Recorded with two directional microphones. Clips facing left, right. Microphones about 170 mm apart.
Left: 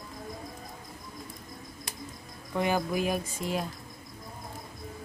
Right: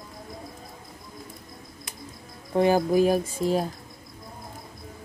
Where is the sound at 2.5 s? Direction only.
35° right (ahead or behind).